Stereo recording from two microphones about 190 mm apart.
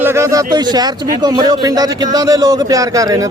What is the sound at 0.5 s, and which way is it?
Speech, 20° right (ahead or behind).